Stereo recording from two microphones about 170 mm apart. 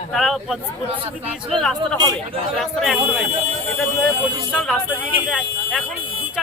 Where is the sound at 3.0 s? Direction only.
10° right (ahead or behind).